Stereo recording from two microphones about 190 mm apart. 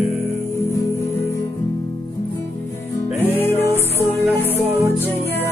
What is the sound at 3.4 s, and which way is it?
Music, 10° left (ahead or behind).